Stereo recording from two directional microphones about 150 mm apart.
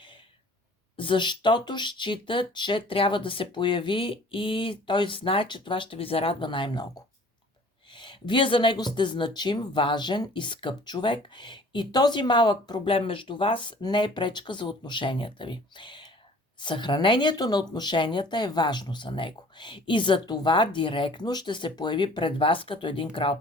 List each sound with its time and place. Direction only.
0.9 s speech: 35° left (ahead or behind)
7.9 s speech: 30° left (ahead or behind)